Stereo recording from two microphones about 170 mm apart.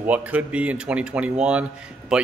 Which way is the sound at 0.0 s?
10° right (ahead or behind).